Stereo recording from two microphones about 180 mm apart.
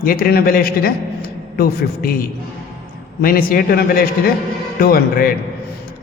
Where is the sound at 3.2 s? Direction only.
55° left (ahead or behind).